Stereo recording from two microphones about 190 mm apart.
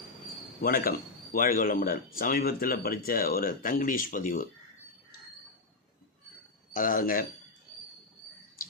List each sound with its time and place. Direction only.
0.6 s speech: 50° left (ahead or behind)
6.7 s speech: 45° left (ahead or behind)